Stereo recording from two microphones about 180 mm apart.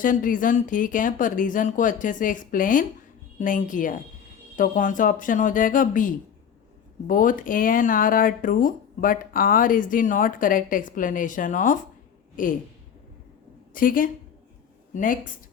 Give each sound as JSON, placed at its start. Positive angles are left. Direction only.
{"t": 0.0, "sound": "speech", "side_deg": 50}
{"t": 13.7, "sound": "speech", "side_deg": 50}